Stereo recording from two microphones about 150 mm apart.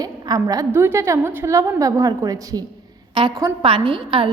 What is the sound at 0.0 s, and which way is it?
A woman's voice, 25° right (ahead or behind).